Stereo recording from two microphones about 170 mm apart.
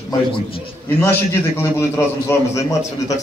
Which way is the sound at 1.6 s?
15° left (ahead or behind).